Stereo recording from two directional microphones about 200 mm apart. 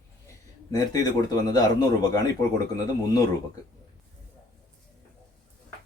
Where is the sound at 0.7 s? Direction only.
20° left (ahead or behind).